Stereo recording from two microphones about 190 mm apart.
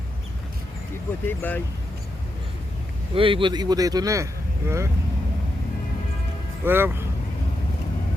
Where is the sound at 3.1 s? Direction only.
25° right (ahead or behind).